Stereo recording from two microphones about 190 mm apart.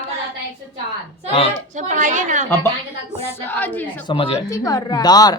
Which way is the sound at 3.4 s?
10° left (ahead or behind).